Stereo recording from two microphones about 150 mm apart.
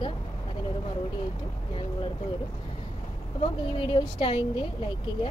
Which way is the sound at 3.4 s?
35° left (ahead or behind).